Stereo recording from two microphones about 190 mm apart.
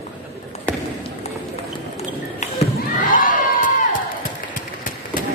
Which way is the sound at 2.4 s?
40° left (ahead or behind).